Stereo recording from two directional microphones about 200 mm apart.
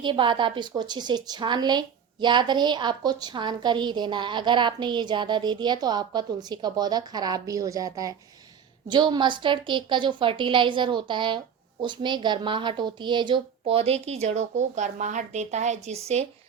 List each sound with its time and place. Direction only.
0.0 s a woman's voice: 25° right (ahead or behind)